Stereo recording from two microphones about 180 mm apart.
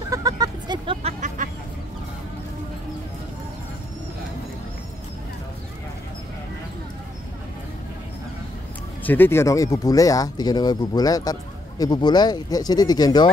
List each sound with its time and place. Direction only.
0.1 s vehicle: 20° right (ahead or behind)
1.4 s vehicle: 45° right (ahead or behind)
9.0 s speech: 10° left (ahead or behind)